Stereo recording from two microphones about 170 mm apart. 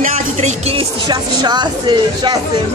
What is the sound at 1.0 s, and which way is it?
Speech, 25° right (ahead or behind).